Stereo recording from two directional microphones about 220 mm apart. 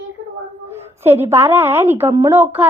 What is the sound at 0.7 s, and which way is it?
A woman's voice, 10° right (ahead or behind).